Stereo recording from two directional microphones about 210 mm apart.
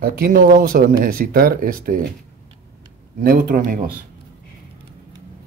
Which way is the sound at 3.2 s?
45° right (ahead or behind).